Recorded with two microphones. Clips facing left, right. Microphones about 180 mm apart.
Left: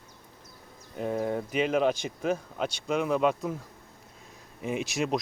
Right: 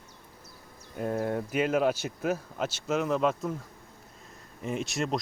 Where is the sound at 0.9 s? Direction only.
Centre (ahead or behind).